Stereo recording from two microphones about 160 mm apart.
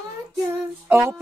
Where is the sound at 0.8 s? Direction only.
15° right (ahead or behind).